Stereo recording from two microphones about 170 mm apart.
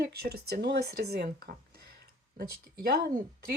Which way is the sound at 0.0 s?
70° right (ahead or behind).